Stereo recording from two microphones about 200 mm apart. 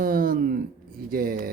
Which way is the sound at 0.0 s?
45° right (ahead or behind).